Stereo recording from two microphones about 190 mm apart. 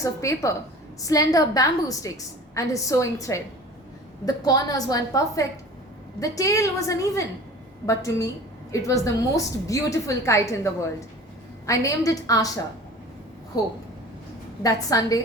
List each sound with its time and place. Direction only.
0.0 s a woman's voice: 15° left (ahead or behind)
13.5 s a woman's voice: 20° left (ahead or behind)